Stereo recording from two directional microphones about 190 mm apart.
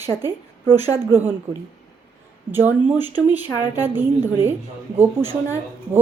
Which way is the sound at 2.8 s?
10° right (ahead or behind).